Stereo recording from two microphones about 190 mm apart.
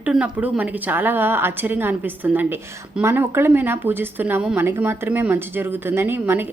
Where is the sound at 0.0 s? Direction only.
5° right (ahead or behind).